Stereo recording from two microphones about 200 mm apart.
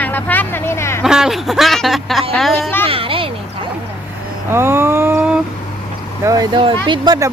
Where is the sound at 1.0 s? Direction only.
5° right (ahead or behind).